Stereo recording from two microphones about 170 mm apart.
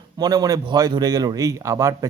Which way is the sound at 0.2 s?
20° right (ahead or behind).